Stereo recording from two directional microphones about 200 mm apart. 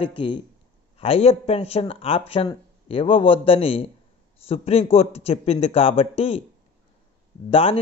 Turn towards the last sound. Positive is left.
turn(degrees=30)  # may be behind; listen again after turning